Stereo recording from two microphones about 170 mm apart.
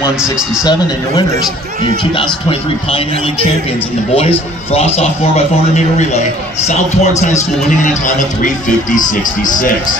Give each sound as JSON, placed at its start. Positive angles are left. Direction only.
{"t": 0.2, "sound": "speech", "side_deg": -5}
{"t": 4.1, "sound": "speech", "side_deg": 35}
{"t": 6.7, "sound": "a man's voice", "side_deg": 45}